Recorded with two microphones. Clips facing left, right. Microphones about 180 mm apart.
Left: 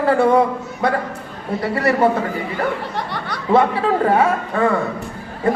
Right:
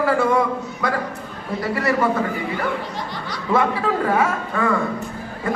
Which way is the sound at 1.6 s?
30° left (ahead or behind).